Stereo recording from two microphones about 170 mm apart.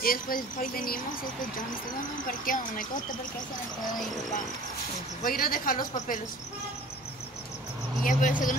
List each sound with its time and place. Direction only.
0.0 s speech: 55° left (ahead or behind)
2.2 s speech: 50° left (ahead or behind)
5.2 s speech: 60° left (ahead or behind)
8.0 s speech: 50° left (ahead or behind)